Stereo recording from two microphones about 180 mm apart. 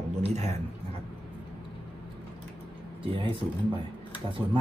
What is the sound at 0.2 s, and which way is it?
Speech, 35° right (ahead or behind).